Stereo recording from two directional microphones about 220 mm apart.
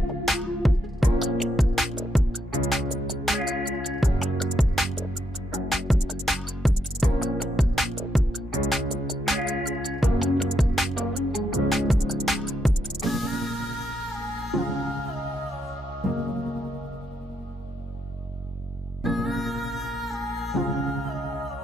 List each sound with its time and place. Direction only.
0.2 s music: centre (ahead or behind)
16.0 s music: centre (ahead or behind)
19.0 s music: centre (ahead or behind)